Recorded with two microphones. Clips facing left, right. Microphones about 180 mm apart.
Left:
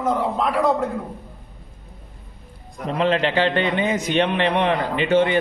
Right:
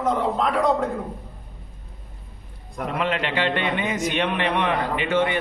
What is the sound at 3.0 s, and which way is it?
A man's voice, 30° left (ahead or behind).